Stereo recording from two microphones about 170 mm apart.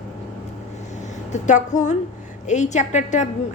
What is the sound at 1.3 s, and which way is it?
A woman's voice, 45° left (ahead or behind).